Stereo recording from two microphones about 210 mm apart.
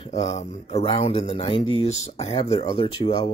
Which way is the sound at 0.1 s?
35° left (ahead or behind).